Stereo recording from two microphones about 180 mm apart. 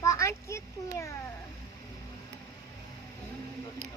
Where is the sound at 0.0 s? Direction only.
15° left (ahead or behind).